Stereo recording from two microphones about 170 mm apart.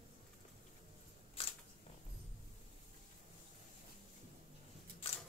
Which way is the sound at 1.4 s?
35° left (ahead or behind).